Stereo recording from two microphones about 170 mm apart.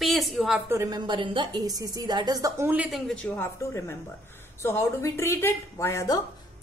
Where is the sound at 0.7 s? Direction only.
20° right (ahead or behind).